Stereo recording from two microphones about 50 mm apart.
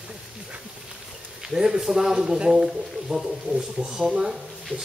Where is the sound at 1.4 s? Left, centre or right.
Centre.